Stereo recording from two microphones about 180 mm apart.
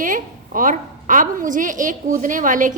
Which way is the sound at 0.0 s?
45° right (ahead or behind).